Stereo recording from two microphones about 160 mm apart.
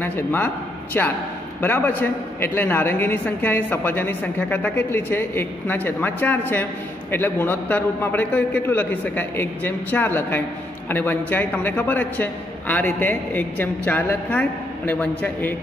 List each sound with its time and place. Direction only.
0.0 s a man's voice: 10° left (ahead or behind)